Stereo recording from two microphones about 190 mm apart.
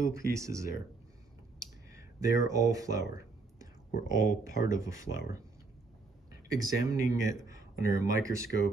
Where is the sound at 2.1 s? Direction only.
15° right (ahead or behind).